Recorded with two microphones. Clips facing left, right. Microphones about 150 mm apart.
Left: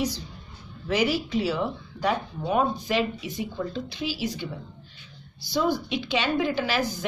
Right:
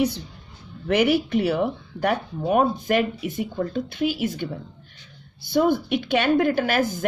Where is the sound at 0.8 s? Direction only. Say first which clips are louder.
Right 5 dB; 60° right (ahead or behind).